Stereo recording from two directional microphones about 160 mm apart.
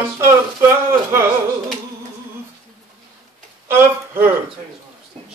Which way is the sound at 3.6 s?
15° right (ahead or behind).